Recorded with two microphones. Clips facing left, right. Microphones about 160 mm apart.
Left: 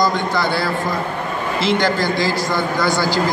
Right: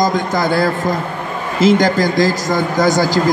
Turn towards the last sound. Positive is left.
turn(degrees=-45)  # may be behind; listen again after turning